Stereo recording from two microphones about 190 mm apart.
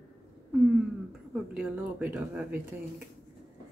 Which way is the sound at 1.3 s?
5° right (ahead or behind).